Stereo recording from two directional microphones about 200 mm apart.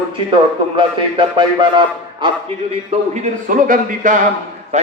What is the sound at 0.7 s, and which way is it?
A man's voice, 25° right (ahead or behind).